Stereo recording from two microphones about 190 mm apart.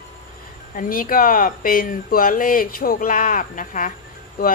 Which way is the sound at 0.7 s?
50° left (ahead or behind).